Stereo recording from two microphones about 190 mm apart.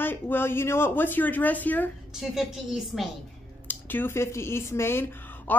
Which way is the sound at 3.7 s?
10° left (ahead or behind).